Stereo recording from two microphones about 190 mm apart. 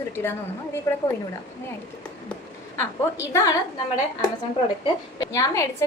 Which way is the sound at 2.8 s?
15° left (ahead or behind).